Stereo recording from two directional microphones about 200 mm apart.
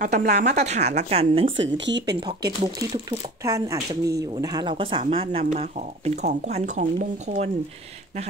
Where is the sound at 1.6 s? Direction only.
60° right (ahead or behind).